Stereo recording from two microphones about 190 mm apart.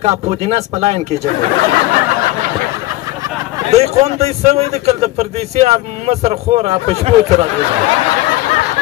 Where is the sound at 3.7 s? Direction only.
35° right (ahead or behind).